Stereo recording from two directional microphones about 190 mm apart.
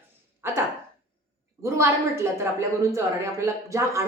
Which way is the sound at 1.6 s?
15° right (ahead or behind).